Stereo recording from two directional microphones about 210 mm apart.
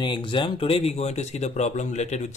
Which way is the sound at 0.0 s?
25° left (ahead or behind).